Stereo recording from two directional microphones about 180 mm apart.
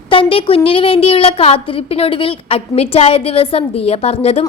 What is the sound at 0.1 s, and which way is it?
A woman's voice, 30° left (ahead or behind).